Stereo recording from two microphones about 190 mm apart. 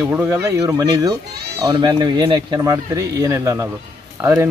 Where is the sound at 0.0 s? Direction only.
10° right (ahead or behind).